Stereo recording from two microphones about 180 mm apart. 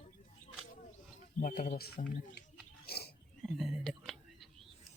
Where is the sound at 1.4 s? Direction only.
50° left (ahead or behind).